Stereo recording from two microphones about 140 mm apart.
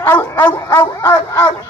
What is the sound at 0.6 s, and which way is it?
Speech, 25° left (ahead or behind).